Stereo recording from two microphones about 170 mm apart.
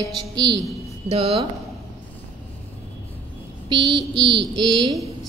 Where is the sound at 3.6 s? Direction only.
25° right (ahead or behind).